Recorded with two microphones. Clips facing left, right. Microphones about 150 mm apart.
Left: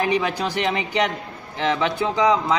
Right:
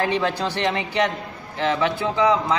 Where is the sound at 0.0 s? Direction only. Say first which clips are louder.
Even; 10° left (ahead or behind).